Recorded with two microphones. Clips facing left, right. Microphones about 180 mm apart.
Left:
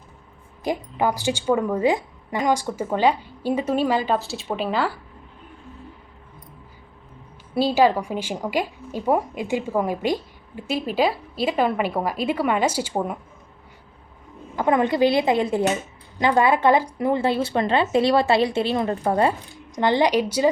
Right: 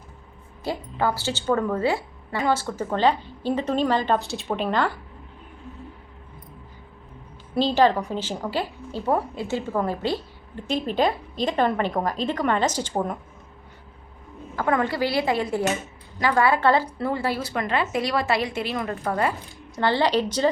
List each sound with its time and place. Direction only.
0.6 s a woman's voice: 15° left (ahead or behind)
7.5 s a woman's voice: 10° left (ahead or behind)
14.5 s speech: 20° left (ahead or behind)
19.7 s a woman's voice: 15° left (ahead or behind)